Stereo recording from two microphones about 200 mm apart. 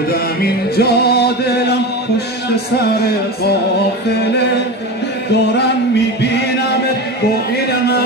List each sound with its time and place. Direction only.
0.1 s music: 50° left (ahead or behind)